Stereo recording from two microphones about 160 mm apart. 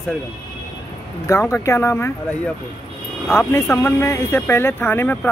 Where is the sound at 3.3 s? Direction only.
15° left (ahead or behind).